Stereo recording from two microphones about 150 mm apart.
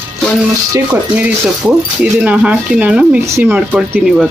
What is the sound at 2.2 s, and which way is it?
Speech, 10° right (ahead or behind).